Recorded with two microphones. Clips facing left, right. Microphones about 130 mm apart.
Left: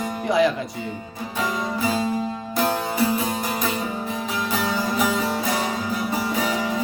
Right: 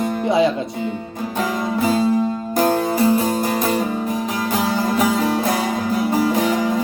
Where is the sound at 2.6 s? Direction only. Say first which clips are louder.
Right 5 dB; 45° right (ahead or behind).